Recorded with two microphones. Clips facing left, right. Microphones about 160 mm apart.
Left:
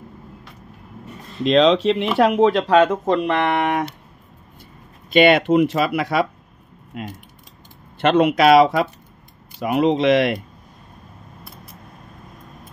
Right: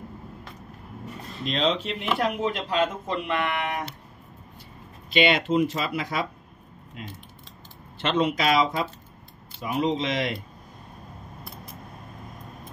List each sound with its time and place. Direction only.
1.4 s speech: 90° left
5.1 s speech: 55° left (ahead or behind)